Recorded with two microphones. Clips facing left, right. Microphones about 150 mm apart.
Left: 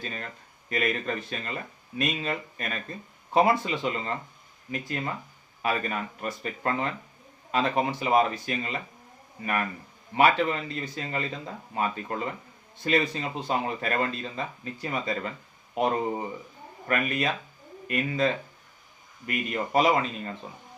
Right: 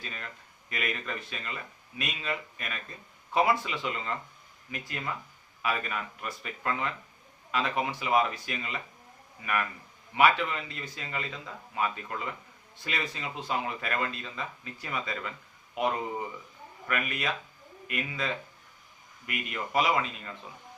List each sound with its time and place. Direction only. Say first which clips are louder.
0.0 s speech: left 5 dB; 35° left (ahead or behind)
10.2 s speech: left 3 dB; 35° left (ahead or behind)